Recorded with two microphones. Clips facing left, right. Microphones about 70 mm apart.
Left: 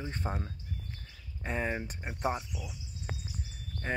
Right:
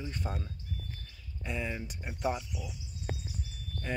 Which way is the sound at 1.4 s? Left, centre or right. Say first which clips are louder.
Left 3 dB; left.